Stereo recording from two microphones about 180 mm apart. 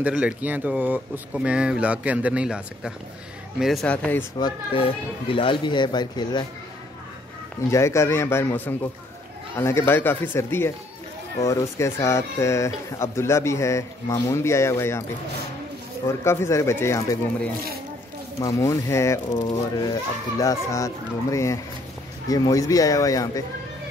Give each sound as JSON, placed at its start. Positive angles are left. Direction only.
{"t": 0.0, "sound": "speech", "side_deg": -5}
{"t": 4.4, "sound": "speech", "side_deg": 25}
{"t": 7.7, "sound": "speech", "side_deg": 15}
{"t": 16.1, "sound": "speech", "side_deg": 15}